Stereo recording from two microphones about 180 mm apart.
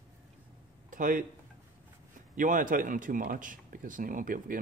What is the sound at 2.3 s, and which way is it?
Speech, 45° right (ahead or behind).